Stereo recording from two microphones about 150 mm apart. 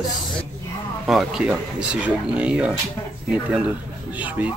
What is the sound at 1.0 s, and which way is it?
Speech, 5° right (ahead or behind).